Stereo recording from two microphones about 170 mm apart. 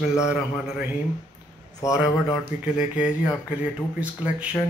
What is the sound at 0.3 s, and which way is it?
Speech, 5° right (ahead or behind).